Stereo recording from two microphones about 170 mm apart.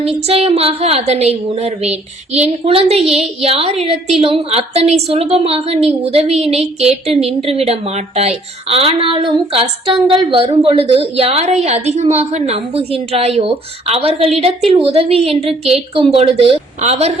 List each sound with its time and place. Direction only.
0.0 s a woman's voice: 35° right (ahead or behind)